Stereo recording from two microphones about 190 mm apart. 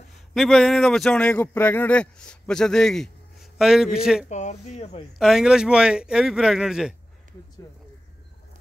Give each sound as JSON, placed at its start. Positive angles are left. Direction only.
{"t": 0.3, "sound": "speech", "side_deg": 0}
{"t": 4.3, "sound": "speech", "side_deg": 40}
{"t": 5.2, "sound": "speech", "side_deg": -5}